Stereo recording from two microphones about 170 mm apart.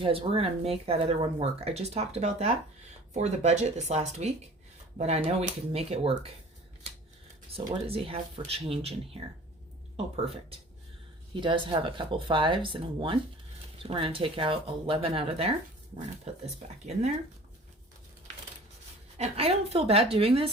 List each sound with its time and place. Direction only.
0.0 s speech: 35° right (ahead or behind)
7.5 s speech: 35° right (ahead or behind)
11.3 s speech: 30° right (ahead or behind)
16.9 s speech: 40° right (ahead or behind)
19.1 s speech: 35° right (ahead or behind)